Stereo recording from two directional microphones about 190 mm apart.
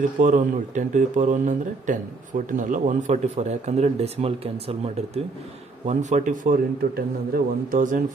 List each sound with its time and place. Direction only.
0.2 s a man's voice: 45° right (ahead or behind)